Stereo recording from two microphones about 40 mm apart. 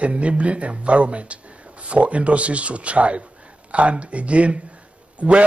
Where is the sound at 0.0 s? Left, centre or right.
Right.